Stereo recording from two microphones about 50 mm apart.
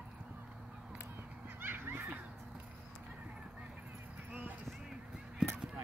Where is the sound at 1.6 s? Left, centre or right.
Right.